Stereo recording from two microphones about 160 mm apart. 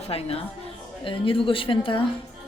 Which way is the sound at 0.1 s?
40° left (ahead or behind).